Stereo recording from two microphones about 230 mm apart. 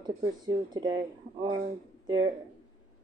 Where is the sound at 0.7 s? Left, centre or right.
Centre.